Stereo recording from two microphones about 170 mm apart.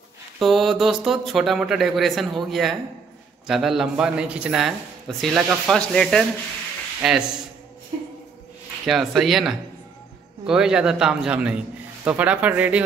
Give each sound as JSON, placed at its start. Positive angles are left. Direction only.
{"t": 0.4, "sound": "a man's voice", "side_deg": 0}
{"t": 8.8, "sound": "a man's voice", "side_deg": 0}